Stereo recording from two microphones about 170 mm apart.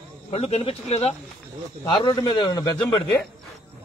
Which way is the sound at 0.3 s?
35° left (ahead or behind).